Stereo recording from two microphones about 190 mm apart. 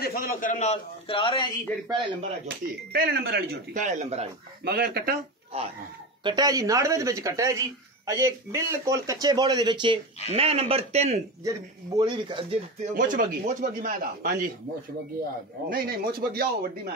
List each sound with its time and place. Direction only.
0.0 s a man's voice: 50° left (ahead or behind); by 1.5 s 25° left (ahead or behind)
2.4 s speech: 50° right (ahead or behind)
3.8 s a man's voice: 35° right (ahead or behind)
4.6 s speech: 55° right (ahead or behind)
6.2 s a man's voice: 20° right (ahead or behind)
11.4 s a man's voice: 20° right (ahead or behind)
12.8 s speech: 45° right (ahead or behind)
15.7 s speech: 50° right (ahead or behind)